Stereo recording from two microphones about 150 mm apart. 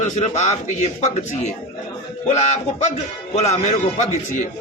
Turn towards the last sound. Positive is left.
turn(degrees=50)  # may be behind; listen again after turning